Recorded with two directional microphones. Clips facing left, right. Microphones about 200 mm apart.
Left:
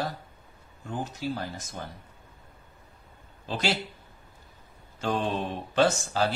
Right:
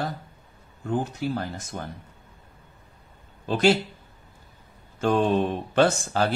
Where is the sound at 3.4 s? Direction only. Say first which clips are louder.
Right 9 dB; 50° right (ahead or behind).